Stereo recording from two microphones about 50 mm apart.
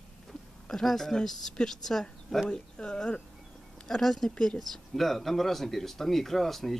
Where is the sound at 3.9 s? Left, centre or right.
Centre.